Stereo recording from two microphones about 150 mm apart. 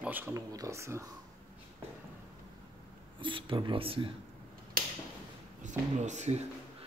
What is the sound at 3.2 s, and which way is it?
Speech, 35° right (ahead or behind).